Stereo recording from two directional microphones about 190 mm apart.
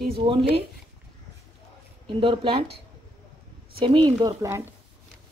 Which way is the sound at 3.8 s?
25° right (ahead or behind).